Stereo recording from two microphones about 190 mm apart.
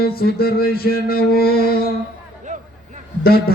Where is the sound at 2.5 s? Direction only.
40° right (ahead or behind).